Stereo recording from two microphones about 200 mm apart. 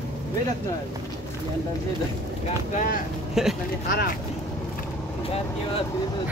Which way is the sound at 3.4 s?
Centre (ahead or behind).